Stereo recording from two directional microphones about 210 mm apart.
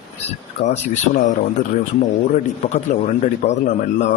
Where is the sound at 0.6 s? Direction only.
35° left (ahead or behind).